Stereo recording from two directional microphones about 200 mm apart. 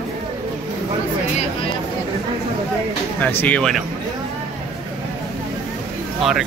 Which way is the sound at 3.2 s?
5° left (ahead or behind).